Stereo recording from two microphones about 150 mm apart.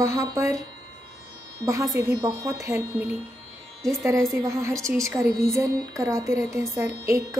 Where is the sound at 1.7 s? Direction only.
20° right (ahead or behind).